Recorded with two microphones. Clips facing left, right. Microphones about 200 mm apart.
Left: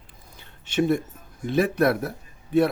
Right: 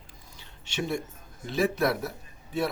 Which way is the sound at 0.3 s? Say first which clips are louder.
Left 10 dB; 55° left (ahead or behind).